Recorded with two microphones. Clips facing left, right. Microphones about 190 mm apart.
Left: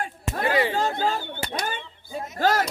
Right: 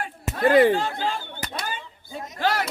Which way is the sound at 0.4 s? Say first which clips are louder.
Right 7 dB; 50° right (ahead or behind).